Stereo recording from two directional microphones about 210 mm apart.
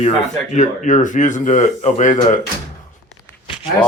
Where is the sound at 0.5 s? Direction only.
35° left (ahead or behind).